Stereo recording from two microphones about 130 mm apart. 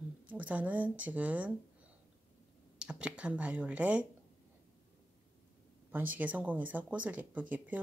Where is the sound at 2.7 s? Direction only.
5° right (ahead or behind).